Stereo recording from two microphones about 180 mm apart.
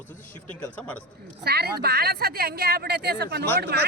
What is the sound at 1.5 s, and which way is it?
A woman's voice, 60° right (ahead or behind).